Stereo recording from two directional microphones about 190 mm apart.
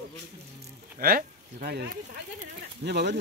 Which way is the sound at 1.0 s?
50° right (ahead or behind).